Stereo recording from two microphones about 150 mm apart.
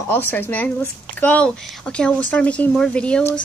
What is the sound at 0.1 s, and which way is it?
Speech, 15° left (ahead or behind).